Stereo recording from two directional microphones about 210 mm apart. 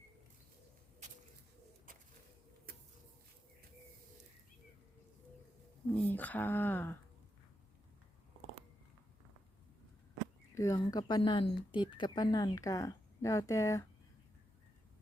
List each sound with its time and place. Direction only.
1.9 s bird: 40° right (ahead or behind)
5.9 s speech: 10° left (ahead or behind)
10.5 s speech: 15° left (ahead or behind)